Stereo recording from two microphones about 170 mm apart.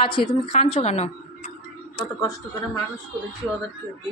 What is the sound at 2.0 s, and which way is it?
Speech, 20° left (ahead or behind).